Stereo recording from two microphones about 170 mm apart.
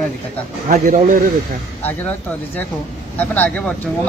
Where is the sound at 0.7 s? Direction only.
50° right (ahead or behind).